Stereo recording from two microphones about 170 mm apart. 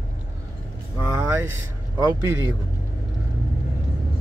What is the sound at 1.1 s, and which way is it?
Speech, 10° right (ahead or behind).